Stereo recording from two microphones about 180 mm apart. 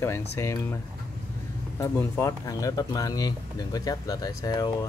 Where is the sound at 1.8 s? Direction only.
15° left (ahead or behind).